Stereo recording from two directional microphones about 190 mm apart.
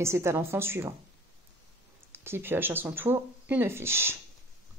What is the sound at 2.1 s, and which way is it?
A woman's voice, 10° right (ahead or behind).